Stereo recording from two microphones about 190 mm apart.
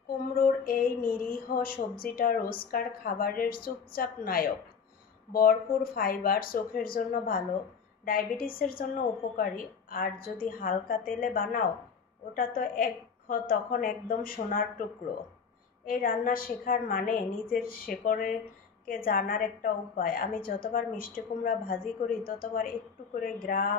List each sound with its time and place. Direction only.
0.4 s a woman's voice: 50° left (ahead or behind)
15.8 s a woman's voice: 50° left (ahead or behind)